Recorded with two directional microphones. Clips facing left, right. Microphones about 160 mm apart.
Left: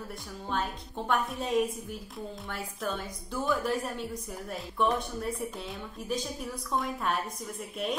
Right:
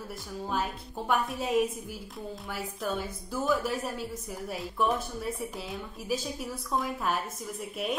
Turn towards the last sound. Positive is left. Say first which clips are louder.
# even
turn(degrees=-5)  # may be behind; listen again after turning